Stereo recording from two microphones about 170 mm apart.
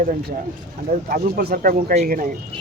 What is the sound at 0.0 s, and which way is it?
Speech, 55° right (ahead or behind).